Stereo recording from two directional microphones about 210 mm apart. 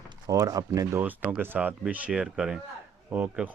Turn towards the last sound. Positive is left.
turn(degrees=-5)  # may be behind; listen again after turning